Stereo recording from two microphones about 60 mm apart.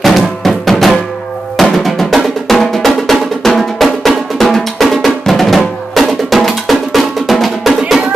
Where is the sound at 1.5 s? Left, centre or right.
Centre.